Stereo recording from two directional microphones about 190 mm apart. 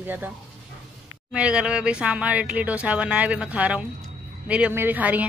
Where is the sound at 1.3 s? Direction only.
5° right (ahead or behind).